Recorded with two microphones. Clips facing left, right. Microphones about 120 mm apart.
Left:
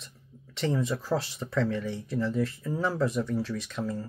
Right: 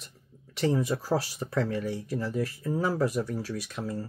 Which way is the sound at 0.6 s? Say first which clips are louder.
Right 2 dB; 10° right (ahead or behind).